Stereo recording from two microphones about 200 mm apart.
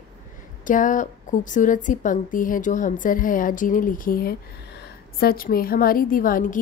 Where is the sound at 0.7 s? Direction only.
40° left (ahead or behind).